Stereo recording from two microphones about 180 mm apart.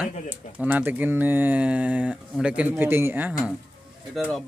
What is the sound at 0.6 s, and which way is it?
Speech, 10° right (ahead or behind).